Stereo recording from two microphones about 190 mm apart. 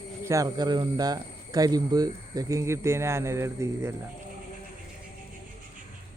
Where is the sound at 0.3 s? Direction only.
20° right (ahead or behind).